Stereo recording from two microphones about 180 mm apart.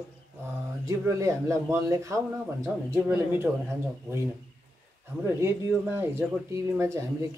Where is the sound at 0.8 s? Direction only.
15° right (ahead or behind).